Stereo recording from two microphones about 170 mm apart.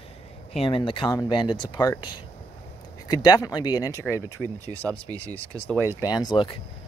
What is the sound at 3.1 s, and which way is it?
Speech, 20° left (ahead or behind).